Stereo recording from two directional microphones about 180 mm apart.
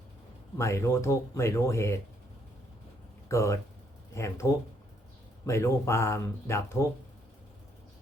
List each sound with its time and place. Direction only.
0.5 s speech: 15° left (ahead or behind)
3.2 s speech: 15° left (ahead or behind)